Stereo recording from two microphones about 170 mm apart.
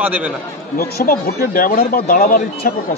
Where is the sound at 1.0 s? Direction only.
60° left (ahead or behind).